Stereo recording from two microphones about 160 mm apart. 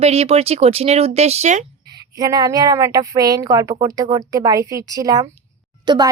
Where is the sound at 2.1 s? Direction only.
25° right (ahead or behind).